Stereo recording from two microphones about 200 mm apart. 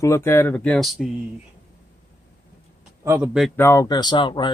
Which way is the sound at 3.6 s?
15° left (ahead or behind).